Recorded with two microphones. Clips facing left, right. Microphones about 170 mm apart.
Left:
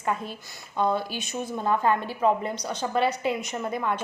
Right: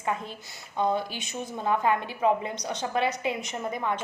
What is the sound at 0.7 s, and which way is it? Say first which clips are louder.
A woman's voice: left 1 dB; 20° right (ahead or behind).